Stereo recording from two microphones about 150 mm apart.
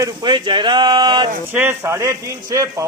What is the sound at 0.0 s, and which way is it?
Speech, 30° right (ahead or behind).